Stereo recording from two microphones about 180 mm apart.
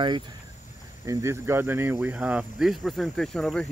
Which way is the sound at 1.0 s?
15° right (ahead or behind).